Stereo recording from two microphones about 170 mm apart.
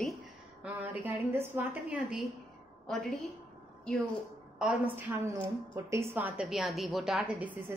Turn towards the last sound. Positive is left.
turn(degrees=-10)  # may be behind; listen again after turning